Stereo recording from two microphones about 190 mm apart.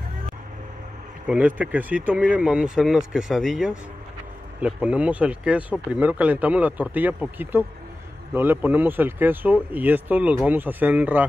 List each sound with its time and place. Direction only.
1.2 s speech: 5° right (ahead or behind)